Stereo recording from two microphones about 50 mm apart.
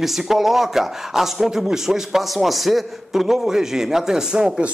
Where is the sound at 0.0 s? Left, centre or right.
Centre.